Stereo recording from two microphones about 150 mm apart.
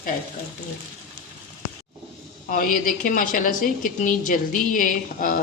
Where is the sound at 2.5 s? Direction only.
65° left (ahead or behind).